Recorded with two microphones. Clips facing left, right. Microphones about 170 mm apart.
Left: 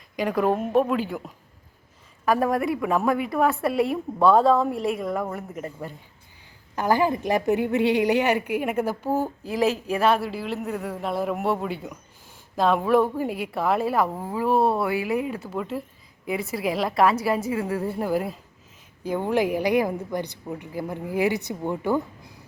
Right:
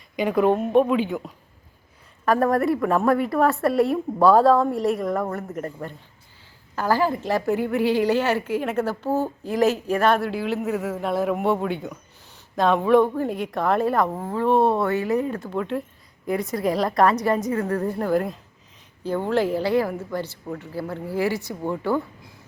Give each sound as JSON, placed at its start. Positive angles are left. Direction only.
{"t": 0.2, "sound": "a woman's voice", "side_deg": 0}
{"t": 6.7, "sound": "a woman's voice", "side_deg": 20}